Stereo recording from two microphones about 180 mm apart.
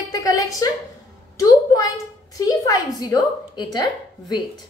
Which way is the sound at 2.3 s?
20° left (ahead or behind).